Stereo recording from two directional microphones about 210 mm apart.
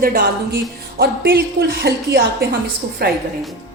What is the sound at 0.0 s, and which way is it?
Speech, 45° right (ahead or behind).